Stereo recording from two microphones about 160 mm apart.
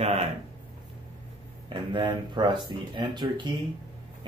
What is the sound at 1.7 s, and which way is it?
Speech, 30° right (ahead or behind).